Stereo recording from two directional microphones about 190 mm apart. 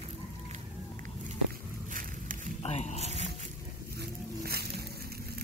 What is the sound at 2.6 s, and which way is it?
Speech, 35° left (ahead or behind).